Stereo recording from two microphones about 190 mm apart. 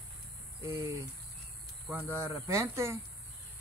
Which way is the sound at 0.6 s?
15° right (ahead or behind).